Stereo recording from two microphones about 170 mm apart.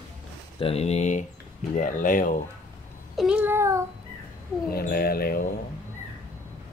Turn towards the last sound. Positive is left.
turn(degrees=60)  # may be behind; listen again after turning